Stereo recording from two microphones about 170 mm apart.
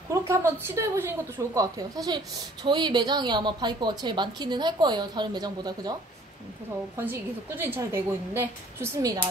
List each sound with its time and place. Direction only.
0.3 s a woman's voice: 15° right (ahead or behind)
7.0 s a woman's voice: 10° right (ahead or behind)